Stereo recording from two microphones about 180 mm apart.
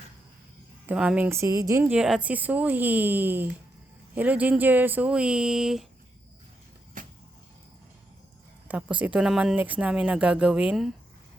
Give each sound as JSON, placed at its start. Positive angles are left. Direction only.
{"t": 0.9, "sound": "a woman's voice", "side_deg": -5}
{"t": 7.0, "sound": "a sound", "side_deg": -50}
{"t": 8.6, "sound": "speech", "side_deg": -5}